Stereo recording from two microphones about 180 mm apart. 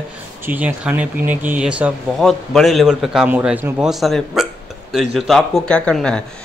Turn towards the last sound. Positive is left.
turn(degrees=5)  # may be behind; listen again after turning